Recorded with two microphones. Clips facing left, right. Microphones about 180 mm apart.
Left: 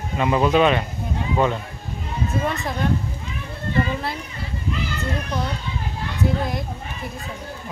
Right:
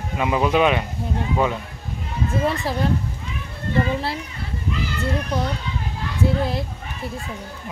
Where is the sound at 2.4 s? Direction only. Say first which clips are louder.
Right 3 dB; 30° right (ahead or behind).